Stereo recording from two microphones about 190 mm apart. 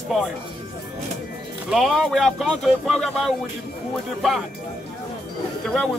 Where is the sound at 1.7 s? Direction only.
Centre (ahead or behind).